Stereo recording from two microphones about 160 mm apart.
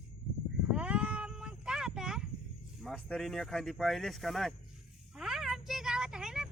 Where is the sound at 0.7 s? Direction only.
5° right (ahead or behind).